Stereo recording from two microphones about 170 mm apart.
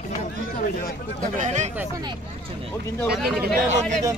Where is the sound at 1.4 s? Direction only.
45° right (ahead or behind).